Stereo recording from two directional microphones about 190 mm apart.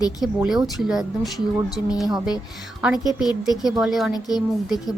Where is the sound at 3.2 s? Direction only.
20° left (ahead or behind).